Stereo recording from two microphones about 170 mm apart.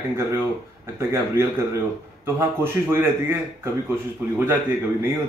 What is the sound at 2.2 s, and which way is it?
Speech, 15° right (ahead or behind).